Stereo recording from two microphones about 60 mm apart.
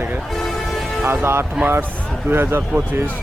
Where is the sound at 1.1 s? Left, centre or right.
Right.